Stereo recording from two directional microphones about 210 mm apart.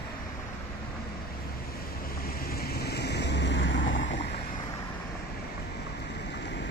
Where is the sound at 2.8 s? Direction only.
50° left (ahead or behind).